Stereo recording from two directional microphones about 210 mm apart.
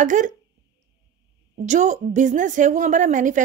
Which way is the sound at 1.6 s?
35° right (ahead or behind).